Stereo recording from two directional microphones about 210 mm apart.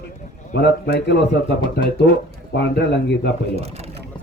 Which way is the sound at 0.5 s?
50° left (ahead or behind).